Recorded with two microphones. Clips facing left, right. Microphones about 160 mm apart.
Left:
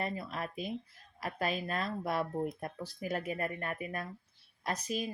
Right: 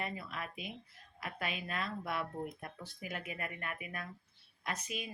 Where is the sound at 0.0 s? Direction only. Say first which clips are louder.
Left 5 dB; 40° left (ahead or behind).